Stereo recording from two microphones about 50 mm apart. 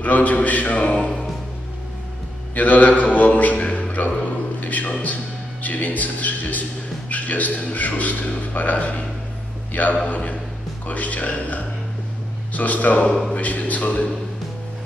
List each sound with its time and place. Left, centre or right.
0.0 s a man's voice: left
2.5 s mantra: left
4.6 s a sound: left
5.0 s a man's voice: left